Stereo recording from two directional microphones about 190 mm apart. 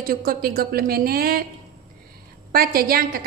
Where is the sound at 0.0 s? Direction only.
50° right (ahead or behind).